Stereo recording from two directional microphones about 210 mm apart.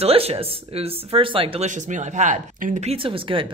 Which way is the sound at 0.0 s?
30° right (ahead or behind).